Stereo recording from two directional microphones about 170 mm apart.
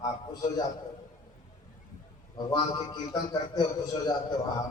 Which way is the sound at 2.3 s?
25° left (ahead or behind).